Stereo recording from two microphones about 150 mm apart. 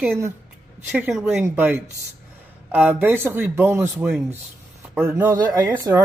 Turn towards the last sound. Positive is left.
turn(degrees=-25)  # may be behind; listen again after turning